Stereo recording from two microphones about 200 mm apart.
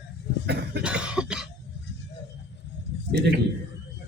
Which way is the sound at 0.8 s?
5° right (ahead or behind).